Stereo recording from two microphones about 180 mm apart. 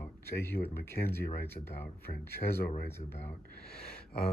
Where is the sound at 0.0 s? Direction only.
15° left (ahead or behind).